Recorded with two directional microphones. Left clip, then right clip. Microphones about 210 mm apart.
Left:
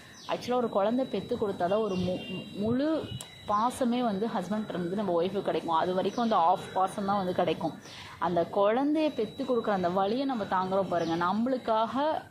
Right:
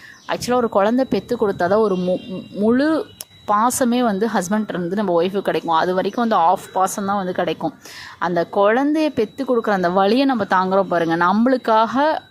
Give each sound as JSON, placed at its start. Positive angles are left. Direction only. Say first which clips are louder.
{"t": 0.3, "sound": "a woman's voice", "louder": "right 10 dB", "side_deg": -30}